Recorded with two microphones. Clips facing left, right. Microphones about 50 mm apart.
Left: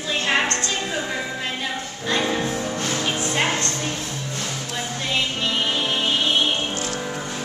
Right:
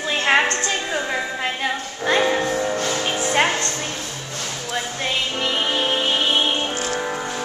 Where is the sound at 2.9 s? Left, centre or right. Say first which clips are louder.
Right 2 dB; right.